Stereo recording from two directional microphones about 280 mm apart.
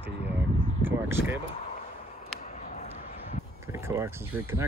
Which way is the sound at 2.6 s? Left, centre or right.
Left.